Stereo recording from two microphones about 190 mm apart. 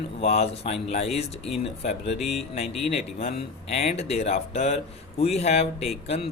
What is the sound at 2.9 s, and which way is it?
Speech, 35° left (ahead or behind).